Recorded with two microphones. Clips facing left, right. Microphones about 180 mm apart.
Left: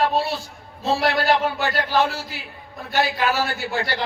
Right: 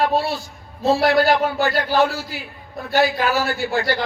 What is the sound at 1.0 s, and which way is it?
A man's voice, 40° right (ahead or behind).